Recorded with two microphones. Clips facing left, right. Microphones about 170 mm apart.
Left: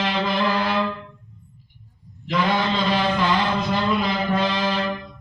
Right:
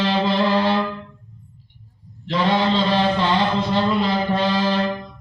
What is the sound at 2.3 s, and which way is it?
Mantra, 30° right (ahead or behind).